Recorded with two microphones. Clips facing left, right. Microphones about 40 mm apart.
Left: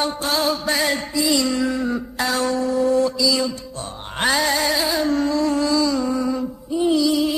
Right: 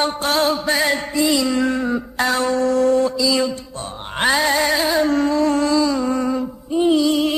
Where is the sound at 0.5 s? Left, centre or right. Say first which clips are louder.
Right 2 dB; centre.